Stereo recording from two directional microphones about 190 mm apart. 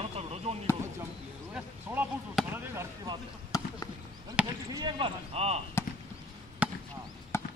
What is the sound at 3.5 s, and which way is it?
Basketball bounce, 20° left (ahead or behind).